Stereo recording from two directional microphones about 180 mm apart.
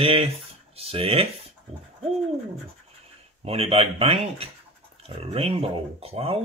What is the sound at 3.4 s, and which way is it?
Speech, 35° right (ahead or behind).